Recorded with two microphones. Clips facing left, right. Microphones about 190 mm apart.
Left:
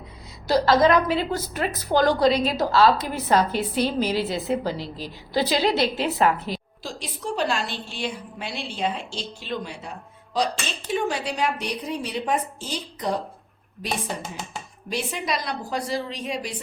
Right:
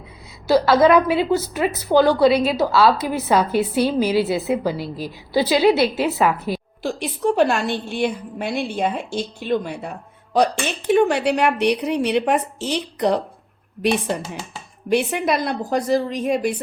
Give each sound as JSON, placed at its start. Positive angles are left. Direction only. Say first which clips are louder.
{"t": 0.4, "sound": "a woman's voice", "louder": "right 4 dB", "side_deg": -10}
{"t": 6.8, "sound": "a woman's voice", "louder": "right 11 dB", "side_deg": -60}
{"t": 14.8, "sound": "a woman's voice", "louder": "right 9 dB", "side_deg": -60}